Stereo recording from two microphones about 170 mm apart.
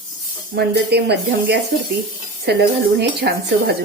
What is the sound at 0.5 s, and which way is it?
A woman's voice, 75° right (ahead or behind).